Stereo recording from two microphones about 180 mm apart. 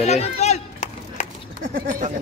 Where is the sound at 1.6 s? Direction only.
45° right (ahead or behind).